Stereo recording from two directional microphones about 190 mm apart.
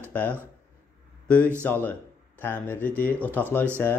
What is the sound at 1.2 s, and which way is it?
Speech, 5° left (ahead or behind).